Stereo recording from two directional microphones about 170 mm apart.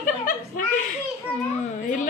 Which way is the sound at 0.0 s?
55° left (ahead or behind).